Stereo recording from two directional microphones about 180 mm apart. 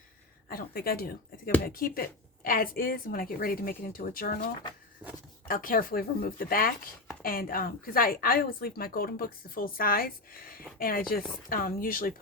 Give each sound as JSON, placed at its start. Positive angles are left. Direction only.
{"t": 0.4, "sound": "speech", "side_deg": 55}